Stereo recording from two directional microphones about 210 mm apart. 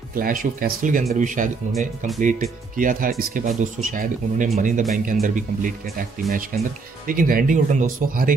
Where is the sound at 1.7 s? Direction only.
Centre (ahead or behind).